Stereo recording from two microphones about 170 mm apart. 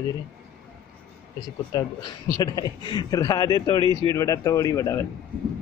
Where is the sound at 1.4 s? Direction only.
20° left (ahead or behind).